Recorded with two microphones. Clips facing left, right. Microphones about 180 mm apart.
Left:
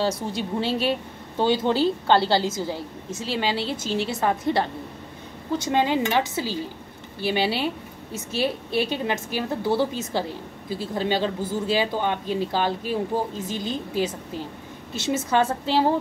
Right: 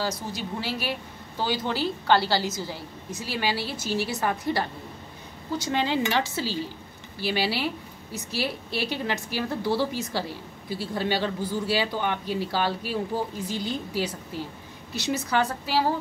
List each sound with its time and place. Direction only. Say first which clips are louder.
0.3 s speech: left 6 dB; 25° left (ahead or behind)